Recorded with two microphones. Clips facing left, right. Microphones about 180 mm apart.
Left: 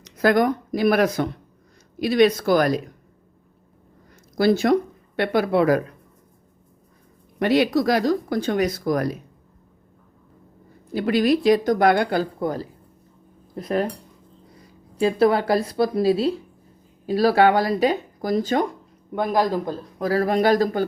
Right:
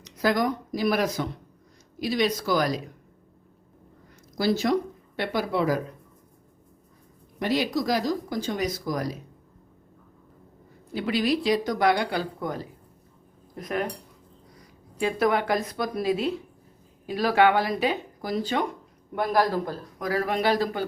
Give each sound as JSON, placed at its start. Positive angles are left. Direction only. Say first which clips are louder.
{"t": 0.0, "sound": "speech", "louder": "left 6 dB", "side_deg": 55}
{"t": 4.4, "sound": "speech", "louder": "left 6 dB", "side_deg": 60}
{"t": 7.3, "sound": "speech", "louder": "left 7 dB", "side_deg": 65}
{"t": 10.9, "sound": "speech", "louder": "left 6 dB", "side_deg": 50}
{"t": 14.9, "sound": "speech", "louder": "left 5 dB", "side_deg": 30}
{"t": 19.1, "sound": "speech", "louder": "left 2 dB", "side_deg": 20}
{"t": 20.0, "sound": "speech", "louder": "left 6 dB", "side_deg": 35}